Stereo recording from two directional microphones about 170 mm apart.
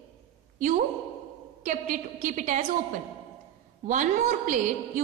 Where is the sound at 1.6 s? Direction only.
45° right (ahead or behind).